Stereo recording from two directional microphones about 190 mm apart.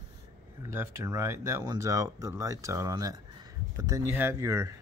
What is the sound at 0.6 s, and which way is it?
Speech, 15° right (ahead or behind).